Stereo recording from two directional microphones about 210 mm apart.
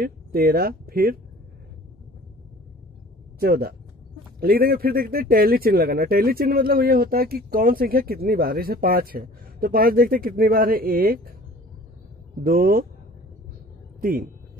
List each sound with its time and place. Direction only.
0.0 s speech: 45° right (ahead or behind)
3.3 s speech: 45° right (ahead or behind)
12.4 s speech: 45° right (ahead or behind)